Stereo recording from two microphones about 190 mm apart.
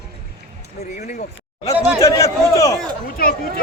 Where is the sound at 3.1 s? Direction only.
50° left (ahead or behind).